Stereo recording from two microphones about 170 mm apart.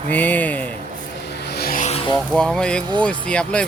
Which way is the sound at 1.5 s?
65° left (ahead or behind).